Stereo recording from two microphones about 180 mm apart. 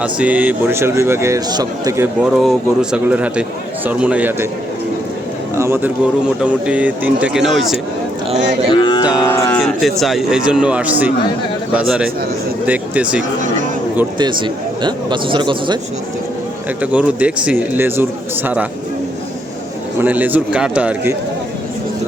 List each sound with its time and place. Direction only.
0.0 s a man's voice: 5° right (ahead or behind)
2.4 s a man's voice: centre (ahead or behind)
5.5 s a man's voice: 15° right (ahead or behind)
8.7 s music: 25° left (ahead or behind)
9.6 s speech: centre (ahead or behind)
14.2 s a man's voice: 25° right (ahead or behind)
16.8 s a man's voice: 10° right (ahead or behind)
20.0 s a man's voice: 10° right (ahead or behind)